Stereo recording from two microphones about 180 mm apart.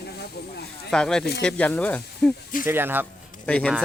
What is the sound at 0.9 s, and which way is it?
Speech, 5° left (ahead or behind).